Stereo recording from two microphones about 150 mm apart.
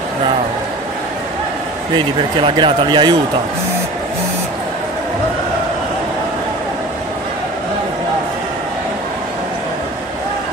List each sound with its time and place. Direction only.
2.3 s speech: 35° right (ahead or behind)